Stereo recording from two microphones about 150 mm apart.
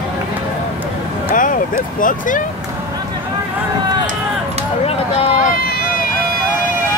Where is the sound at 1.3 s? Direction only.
65° left (ahead or behind).